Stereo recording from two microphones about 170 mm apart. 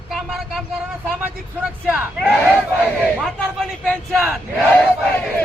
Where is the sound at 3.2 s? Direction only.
Centre (ahead or behind).